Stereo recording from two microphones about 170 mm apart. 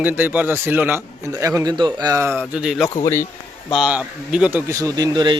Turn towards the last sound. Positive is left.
turn(degrees=-25)  # may be behind; listen again after turning